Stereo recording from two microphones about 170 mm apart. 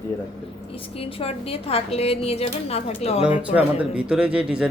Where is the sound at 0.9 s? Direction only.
35° left (ahead or behind).